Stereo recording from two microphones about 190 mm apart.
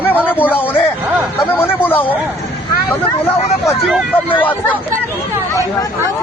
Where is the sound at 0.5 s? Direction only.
10° left (ahead or behind).